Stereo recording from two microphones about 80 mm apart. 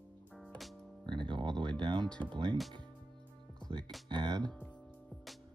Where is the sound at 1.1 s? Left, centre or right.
Right.